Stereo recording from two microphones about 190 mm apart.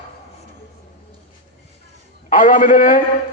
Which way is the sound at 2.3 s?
45° left (ahead or behind).